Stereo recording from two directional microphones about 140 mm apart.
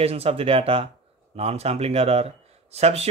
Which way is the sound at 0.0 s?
45° right (ahead or behind).